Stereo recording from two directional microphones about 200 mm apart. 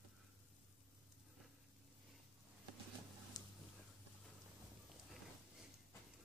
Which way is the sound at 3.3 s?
20° left (ahead or behind).